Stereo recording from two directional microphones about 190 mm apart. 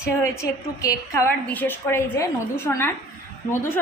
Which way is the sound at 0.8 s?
15° left (ahead or behind).